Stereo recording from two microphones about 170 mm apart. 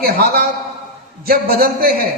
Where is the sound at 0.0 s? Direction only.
65° right (ahead or behind).